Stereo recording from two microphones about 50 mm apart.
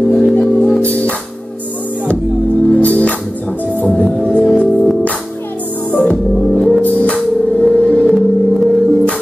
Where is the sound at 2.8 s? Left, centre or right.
Left.